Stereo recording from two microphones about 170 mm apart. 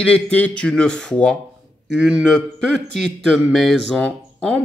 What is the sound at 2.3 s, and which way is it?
Speech, 5° left (ahead or behind).